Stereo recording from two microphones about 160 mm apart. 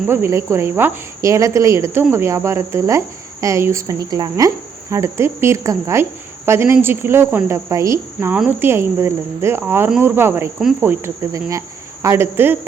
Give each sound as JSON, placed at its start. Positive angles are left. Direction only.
{"t": 0.1, "sound": "speech", "side_deg": -15}
{"t": 10.8, "sound": "cricket", "side_deg": -15}
{"t": 12.0, "sound": "speech", "side_deg": -15}